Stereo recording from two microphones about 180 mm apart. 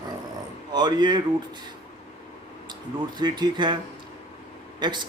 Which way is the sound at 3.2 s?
25° right (ahead or behind).